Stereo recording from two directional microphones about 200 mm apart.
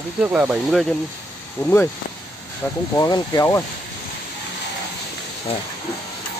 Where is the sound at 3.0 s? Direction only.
15° left (ahead or behind).